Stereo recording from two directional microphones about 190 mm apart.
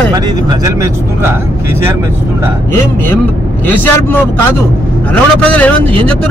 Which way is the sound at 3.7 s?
10° left (ahead or behind).